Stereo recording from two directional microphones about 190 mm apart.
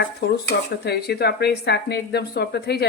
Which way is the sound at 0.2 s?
60° left (ahead or behind).